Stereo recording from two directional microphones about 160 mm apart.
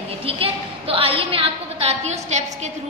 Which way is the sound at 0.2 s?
35° right (ahead or behind).